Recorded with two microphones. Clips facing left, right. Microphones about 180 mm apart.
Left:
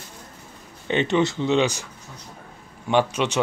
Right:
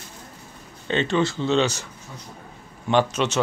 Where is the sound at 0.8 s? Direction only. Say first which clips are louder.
Left 1 dB; 15° left (ahead or behind).